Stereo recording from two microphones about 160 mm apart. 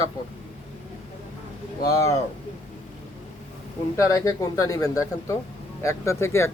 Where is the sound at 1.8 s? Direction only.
20° left (ahead or behind).